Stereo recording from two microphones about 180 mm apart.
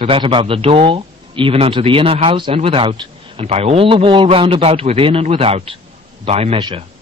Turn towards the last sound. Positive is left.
turn(degrees=-30)  # may be behind; listen again after turning